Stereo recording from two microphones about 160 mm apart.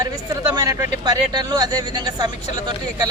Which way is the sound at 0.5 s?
20° right (ahead or behind).